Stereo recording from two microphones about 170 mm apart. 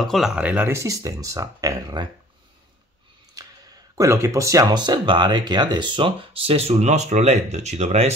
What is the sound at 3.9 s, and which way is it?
Speech, 15° right (ahead or behind).